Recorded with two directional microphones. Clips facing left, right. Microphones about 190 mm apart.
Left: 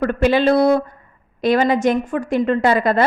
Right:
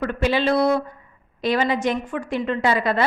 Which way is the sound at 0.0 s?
50° left (ahead or behind).